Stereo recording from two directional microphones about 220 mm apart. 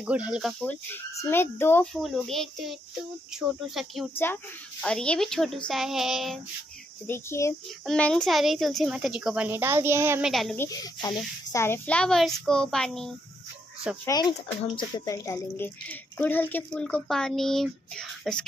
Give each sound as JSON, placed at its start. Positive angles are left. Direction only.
{"t": 0.0, "sound": "a child's voice", "side_deg": -5}
{"t": 4.1, "sound": "a child's voice", "side_deg": 10}
{"t": 7.1, "sound": "a child's voice", "side_deg": 10}
{"t": 10.3, "sound": "a child's voice", "side_deg": 5}
{"t": 14.0, "sound": "speech", "side_deg": 20}